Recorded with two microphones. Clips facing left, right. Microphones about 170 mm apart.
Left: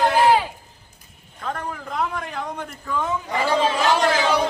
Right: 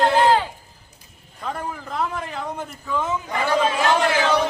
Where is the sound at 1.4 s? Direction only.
5° right (ahead or behind).